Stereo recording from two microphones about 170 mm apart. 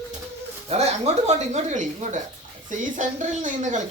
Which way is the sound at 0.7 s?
40° right (ahead or behind).